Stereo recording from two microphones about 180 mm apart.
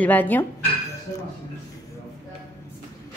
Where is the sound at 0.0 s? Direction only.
10° left (ahead or behind).